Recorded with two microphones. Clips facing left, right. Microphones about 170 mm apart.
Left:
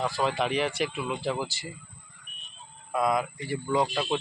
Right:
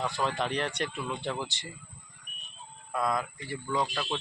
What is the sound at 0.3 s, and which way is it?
Speech, 5° left (ahead or behind).